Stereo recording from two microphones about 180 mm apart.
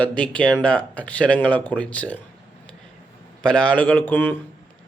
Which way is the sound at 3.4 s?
5° left (ahead or behind).